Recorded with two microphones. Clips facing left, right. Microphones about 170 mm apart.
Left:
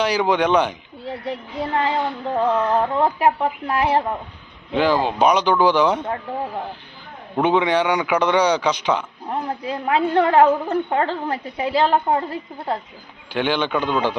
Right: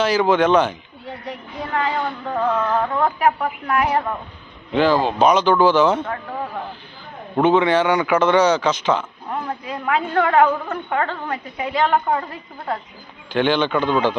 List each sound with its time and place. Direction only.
0.0 s a man's voice: 15° left (ahead or behind)
1.2 s a sound: 30° left (ahead or behind)
4.7 s a man's voice: 10° left (ahead or behind)
7.4 s a man's voice: 15° left (ahead or behind)
9.3 s a woman's voice: 30° left (ahead or behind)
12.0 s a sound: 30° left (ahead or behind)
13.3 s a man's voice: 10° left (ahead or behind)